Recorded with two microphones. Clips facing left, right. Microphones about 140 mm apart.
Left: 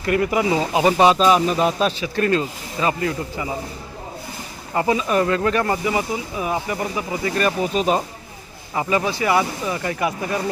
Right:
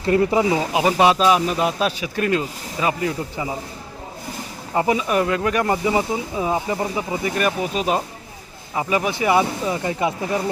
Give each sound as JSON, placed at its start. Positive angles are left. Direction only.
{"t": 0.0, "sound": "speech", "side_deg": -30}
{"t": 0.5, "sound": "speech", "side_deg": -10}
{"t": 4.7, "sound": "speech", "side_deg": -15}
{"t": 7.3, "sound": "speech", "side_deg": -5}